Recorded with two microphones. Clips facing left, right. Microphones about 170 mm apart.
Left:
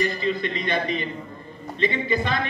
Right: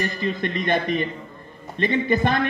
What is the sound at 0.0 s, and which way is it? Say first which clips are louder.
A man's voice: left 1 dB; 50° right (ahead or behind).